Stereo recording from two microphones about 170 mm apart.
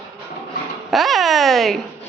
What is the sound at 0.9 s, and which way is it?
Speech, centre (ahead or behind).